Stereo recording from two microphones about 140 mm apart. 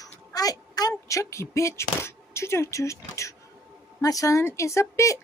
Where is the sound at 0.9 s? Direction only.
20° left (ahead or behind).